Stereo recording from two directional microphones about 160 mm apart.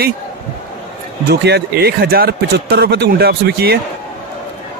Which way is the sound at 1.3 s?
90° right.